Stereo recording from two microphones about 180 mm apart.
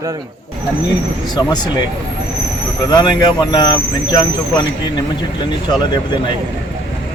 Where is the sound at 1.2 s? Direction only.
20° left (ahead or behind).